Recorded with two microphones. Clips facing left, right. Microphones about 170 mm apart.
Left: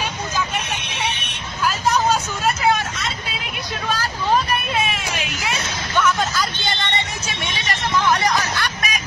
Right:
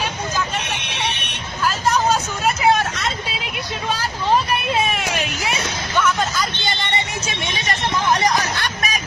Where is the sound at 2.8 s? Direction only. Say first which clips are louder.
Right 4 dB; 65° right (ahead or behind).